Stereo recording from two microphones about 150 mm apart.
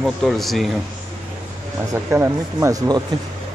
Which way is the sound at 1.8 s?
15° right (ahead or behind).